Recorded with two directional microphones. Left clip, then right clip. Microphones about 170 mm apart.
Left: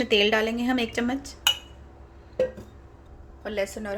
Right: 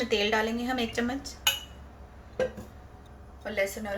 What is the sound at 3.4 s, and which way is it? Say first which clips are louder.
Speech: left 1 dB; 50° left (ahead or behind).